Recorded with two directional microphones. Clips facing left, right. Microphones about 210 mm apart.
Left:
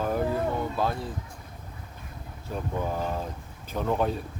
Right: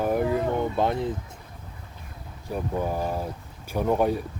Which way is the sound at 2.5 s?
10° right (ahead or behind).